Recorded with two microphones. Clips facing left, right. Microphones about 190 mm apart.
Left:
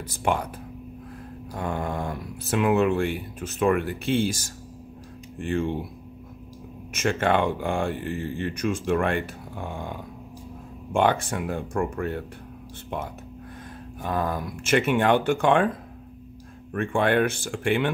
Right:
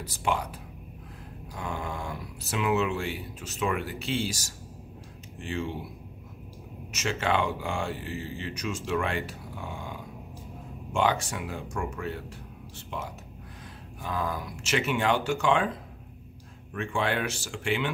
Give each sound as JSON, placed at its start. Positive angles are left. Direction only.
{"t": 0.0, "sound": "speech", "side_deg": 55}
{"t": 1.5, "sound": "speech", "side_deg": 55}
{"t": 6.9, "sound": "speech", "side_deg": 55}
{"t": 16.7, "sound": "speech", "side_deg": 55}